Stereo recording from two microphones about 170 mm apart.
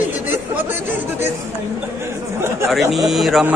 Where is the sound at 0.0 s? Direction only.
10° right (ahead or behind).